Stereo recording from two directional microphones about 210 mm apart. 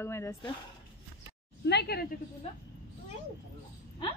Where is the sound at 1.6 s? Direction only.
50° left (ahead or behind).